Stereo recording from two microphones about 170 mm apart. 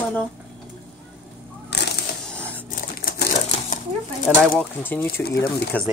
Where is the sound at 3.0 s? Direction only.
60° left (ahead or behind).